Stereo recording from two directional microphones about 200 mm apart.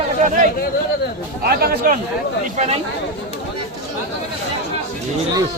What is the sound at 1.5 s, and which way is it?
Speech, 50° right (ahead or behind).